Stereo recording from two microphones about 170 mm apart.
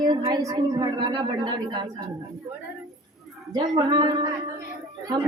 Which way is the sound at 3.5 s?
25° right (ahead or behind).